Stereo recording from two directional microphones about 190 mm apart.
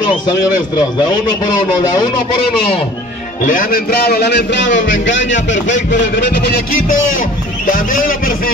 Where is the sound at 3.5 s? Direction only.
50° left (ahead or behind).